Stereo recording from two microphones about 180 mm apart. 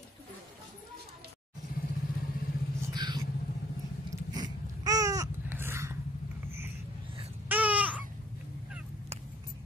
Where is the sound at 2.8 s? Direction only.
25° right (ahead or behind).